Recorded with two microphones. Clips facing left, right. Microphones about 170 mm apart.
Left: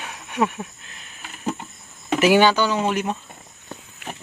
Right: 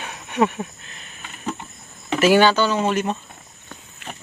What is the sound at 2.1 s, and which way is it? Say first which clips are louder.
Speech: right 1 dB; 15° left (ahead or behind).